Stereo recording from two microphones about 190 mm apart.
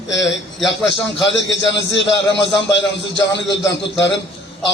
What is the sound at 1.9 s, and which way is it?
Speech, 65° left (ahead or behind).